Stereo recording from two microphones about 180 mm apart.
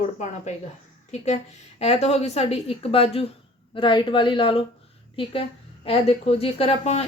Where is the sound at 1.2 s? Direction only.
35° left (ahead or behind).